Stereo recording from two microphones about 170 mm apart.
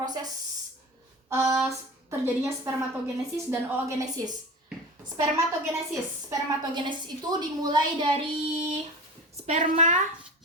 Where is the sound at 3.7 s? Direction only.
20° right (ahead or behind).